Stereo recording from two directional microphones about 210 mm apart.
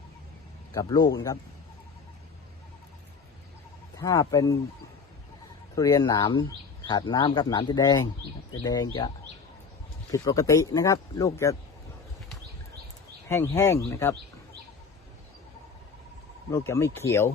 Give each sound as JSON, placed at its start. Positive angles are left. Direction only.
{"t": 0.7, "sound": "speech", "side_deg": 15}
{"t": 3.9, "sound": "speech", "side_deg": 15}
{"t": 5.7, "sound": "speech", "side_deg": 15}
{"t": 10.1, "sound": "speech", "side_deg": 15}
{"t": 13.2, "sound": "speech", "side_deg": 10}
{"t": 16.5, "sound": "speech", "side_deg": 15}